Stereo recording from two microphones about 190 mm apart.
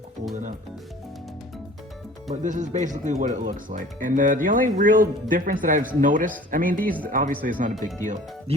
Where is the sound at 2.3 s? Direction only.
40° right (ahead or behind).